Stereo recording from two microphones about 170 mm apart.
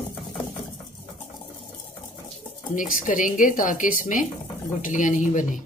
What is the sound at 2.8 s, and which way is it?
Speech, 50° left (ahead or behind).